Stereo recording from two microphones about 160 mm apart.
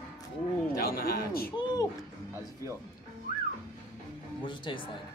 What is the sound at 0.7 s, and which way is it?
Speech, 70° left (ahead or behind).